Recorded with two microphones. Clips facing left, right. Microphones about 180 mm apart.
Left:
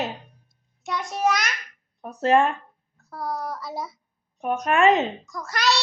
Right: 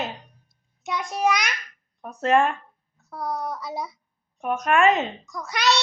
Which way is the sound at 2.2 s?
35° left (ahead or behind).